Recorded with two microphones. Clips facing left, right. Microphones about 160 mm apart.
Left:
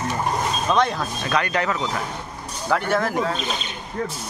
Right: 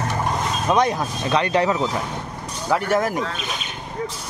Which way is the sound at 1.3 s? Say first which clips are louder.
Right 4 dB; 30° right (ahead or behind).